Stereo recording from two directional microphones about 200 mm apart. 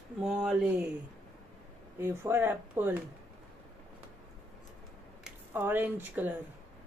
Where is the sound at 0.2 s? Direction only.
5° right (ahead or behind).